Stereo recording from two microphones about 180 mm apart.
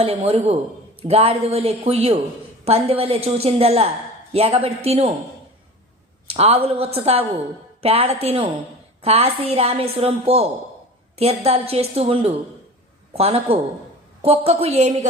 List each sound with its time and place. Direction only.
0.0 s a woman's voice: 35° right (ahead or behind)
6.2 s a woman's voice: 35° right (ahead or behind)